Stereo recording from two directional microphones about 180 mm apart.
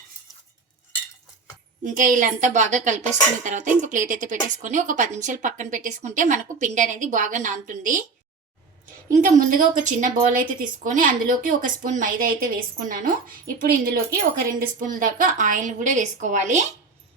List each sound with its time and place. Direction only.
1.8 s a woman's voice: 45° right (ahead or behind)
9.1 s a woman's voice: 45° right (ahead or behind)